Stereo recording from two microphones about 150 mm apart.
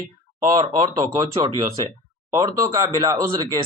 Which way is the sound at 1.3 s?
35° right (ahead or behind).